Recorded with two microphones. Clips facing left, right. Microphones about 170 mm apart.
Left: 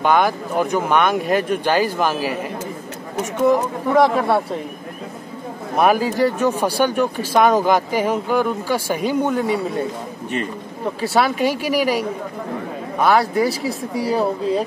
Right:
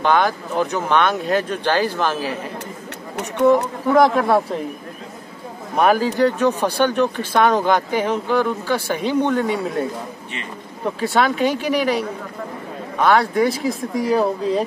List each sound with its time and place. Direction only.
0.0 s speech: 10° left (ahead or behind)
3.9 s speech: centre (ahead or behind)
5.8 s speech: 10° left (ahead or behind)
11.0 s speech: 10° left (ahead or behind)